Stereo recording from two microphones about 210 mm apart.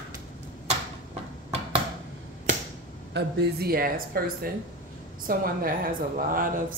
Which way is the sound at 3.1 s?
45° right (ahead or behind).